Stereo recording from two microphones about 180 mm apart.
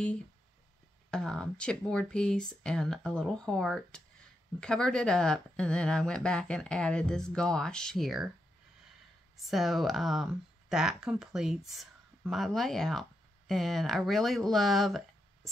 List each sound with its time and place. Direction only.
1.1 s speech: 5° left (ahead or behind)
9.4 s speech: centre (ahead or behind)